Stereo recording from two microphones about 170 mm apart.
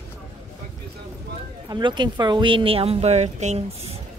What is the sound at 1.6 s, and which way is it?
Speech, 25° right (ahead or behind).